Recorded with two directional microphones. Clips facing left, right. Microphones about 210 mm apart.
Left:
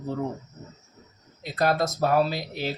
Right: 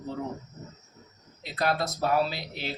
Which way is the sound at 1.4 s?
45° left (ahead or behind).